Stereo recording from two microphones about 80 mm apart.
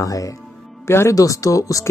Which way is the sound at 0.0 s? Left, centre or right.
Left.